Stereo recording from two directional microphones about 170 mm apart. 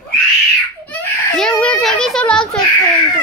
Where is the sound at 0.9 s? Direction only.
5° left (ahead or behind).